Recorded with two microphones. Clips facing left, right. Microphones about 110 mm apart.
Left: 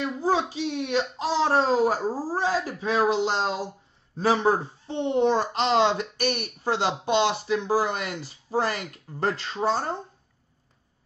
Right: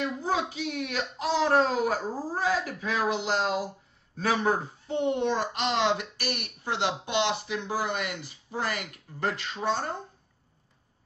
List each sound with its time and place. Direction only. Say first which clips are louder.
0.0 s a child's voice: left 4 dB; 30° left (ahead or behind)